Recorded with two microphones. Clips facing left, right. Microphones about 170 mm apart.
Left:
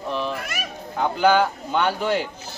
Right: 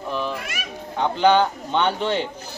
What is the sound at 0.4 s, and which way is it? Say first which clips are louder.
Children playing: left 2 dB; 40° left (ahead or behind).